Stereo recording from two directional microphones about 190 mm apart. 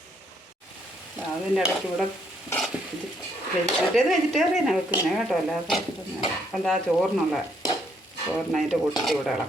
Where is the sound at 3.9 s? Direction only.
Centre (ahead or behind).